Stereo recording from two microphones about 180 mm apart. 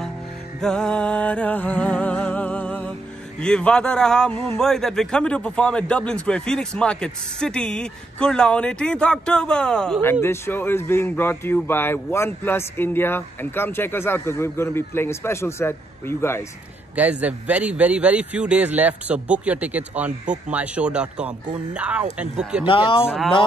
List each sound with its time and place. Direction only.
0.6 s music: 5° left (ahead or behind)
3.3 s a man's voice: 5° left (ahead or behind)
16.9 s a man's voice: 10° right (ahead or behind)
22.7 s speech: 30° left (ahead or behind)
23.0 s a man's voice: centre (ahead or behind)